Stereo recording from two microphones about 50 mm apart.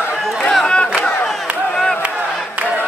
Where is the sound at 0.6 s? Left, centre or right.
Centre.